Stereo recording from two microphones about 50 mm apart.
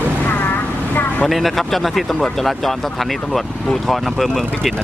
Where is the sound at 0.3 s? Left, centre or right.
Left.